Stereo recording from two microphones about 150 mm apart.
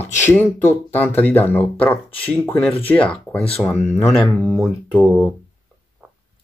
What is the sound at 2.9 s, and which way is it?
Speech, 10° left (ahead or behind).